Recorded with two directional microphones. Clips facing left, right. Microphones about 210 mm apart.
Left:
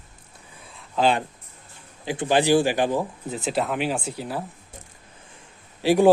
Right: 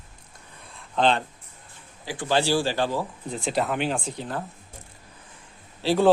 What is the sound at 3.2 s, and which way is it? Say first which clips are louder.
Speech: left 1 dB; 5° left (ahead or behind).